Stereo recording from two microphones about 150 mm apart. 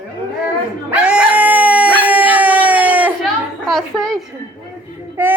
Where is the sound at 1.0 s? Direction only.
5° right (ahead or behind).